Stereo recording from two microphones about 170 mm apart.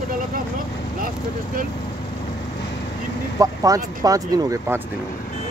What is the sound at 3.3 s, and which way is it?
Speech, 20° right (ahead or behind).